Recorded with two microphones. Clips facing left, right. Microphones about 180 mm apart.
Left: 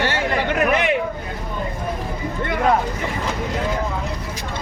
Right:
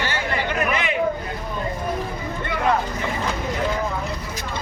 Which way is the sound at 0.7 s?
60° left (ahead or behind).